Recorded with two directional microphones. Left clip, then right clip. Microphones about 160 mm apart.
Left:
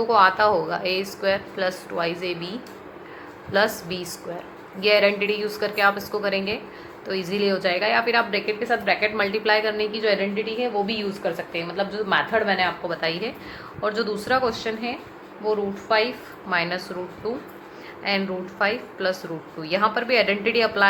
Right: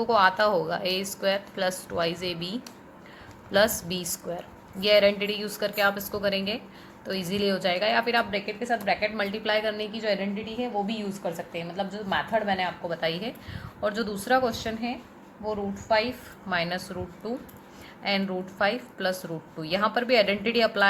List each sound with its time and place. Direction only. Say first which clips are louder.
0.0 s a woman's voice: left 4 dB; 40° right (ahead or behind)